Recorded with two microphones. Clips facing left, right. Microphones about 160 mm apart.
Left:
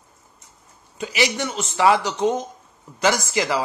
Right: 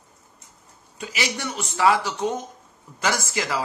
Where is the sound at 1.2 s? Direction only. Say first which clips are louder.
Left 5 dB; 20° left (ahead or behind).